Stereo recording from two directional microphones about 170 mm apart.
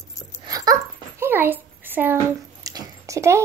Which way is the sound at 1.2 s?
10° right (ahead or behind).